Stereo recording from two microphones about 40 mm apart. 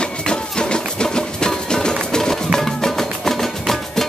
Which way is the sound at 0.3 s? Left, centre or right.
Left.